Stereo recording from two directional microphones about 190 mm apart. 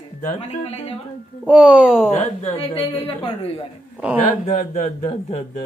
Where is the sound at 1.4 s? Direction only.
5° right (ahead or behind).